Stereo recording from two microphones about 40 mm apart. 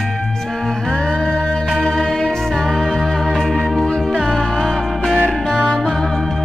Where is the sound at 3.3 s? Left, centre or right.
Centre.